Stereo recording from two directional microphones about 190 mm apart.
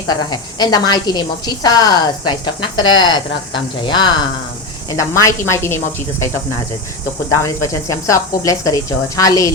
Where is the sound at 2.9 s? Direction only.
90° left.